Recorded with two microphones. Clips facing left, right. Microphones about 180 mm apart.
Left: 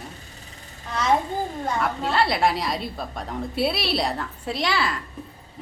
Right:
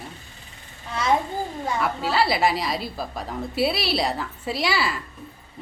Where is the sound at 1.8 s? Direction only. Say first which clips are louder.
Right 1 dB; 5° right (ahead or behind).